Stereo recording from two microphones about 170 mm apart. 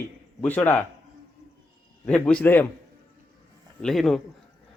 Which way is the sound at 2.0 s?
5° left (ahead or behind).